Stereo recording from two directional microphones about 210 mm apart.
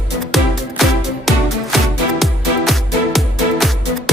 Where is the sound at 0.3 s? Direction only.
Centre (ahead or behind).